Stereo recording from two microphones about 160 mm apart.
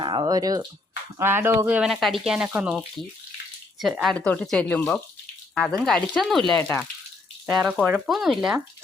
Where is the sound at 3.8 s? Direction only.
Centre (ahead or behind).